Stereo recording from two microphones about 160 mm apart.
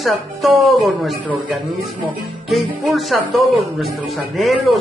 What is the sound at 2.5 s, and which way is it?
Speech, centre (ahead or behind).